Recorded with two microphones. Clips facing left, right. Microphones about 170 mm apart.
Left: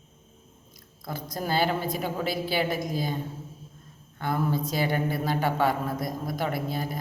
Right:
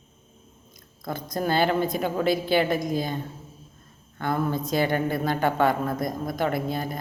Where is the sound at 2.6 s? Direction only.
50° right (ahead or behind).